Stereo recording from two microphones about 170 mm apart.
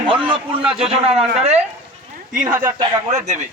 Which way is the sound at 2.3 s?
50° right (ahead or behind).